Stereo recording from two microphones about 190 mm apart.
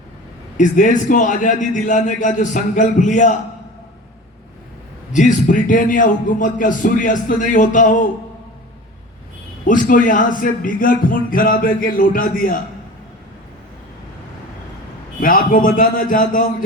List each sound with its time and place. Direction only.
0.5 s a man's voice: 40° left (ahead or behind)
5.1 s a man's voice: 40° left (ahead or behind)
9.6 s a man's voice: 45° left (ahead or behind)
15.2 s a man's voice: 45° left (ahead or behind)